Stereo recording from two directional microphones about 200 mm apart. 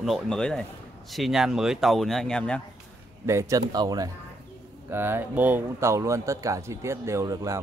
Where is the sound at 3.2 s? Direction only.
15° right (ahead or behind).